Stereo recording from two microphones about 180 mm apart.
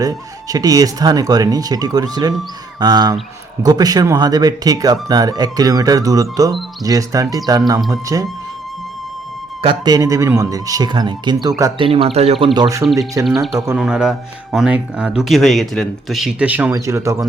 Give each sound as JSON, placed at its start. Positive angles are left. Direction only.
{"t": 0.0, "sound": "speech", "side_deg": -20}
{"t": 9.6, "sound": "speech", "side_deg": -25}
{"t": 11.9, "sound": "speech", "side_deg": -30}
{"t": 12.5, "sound": "speech", "side_deg": -20}
{"t": 13.7, "sound": "speech", "side_deg": -5}